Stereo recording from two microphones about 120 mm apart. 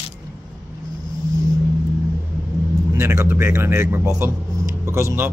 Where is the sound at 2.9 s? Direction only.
25° right (ahead or behind).